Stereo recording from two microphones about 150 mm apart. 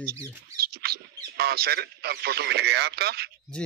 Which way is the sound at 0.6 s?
90° right.